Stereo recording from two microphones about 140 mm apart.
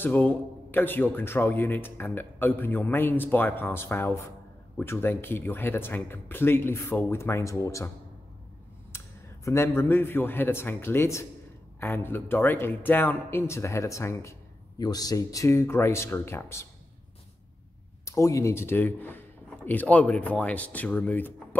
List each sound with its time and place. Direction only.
0.0 s a man's voice: 15° left (ahead or behind)
8.9 s a man's voice: 20° left (ahead or behind)
18.0 s speech: 20° left (ahead or behind)